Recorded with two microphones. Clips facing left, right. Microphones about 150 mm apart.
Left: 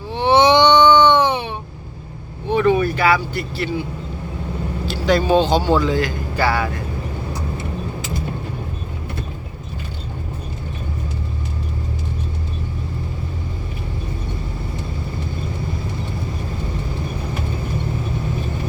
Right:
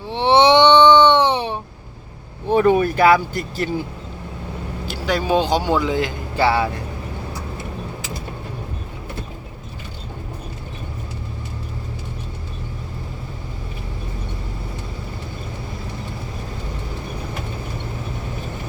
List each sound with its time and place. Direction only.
0.1 s baby cry: 25° right (ahead or behind)
2.5 s speech: 45° right (ahead or behind)
5.0 s speech: 10° right (ahead or behind); by 6.7 s 25° right (ahead or behind)